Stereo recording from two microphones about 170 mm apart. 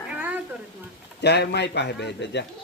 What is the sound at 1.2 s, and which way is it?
A man's voice, 80° left.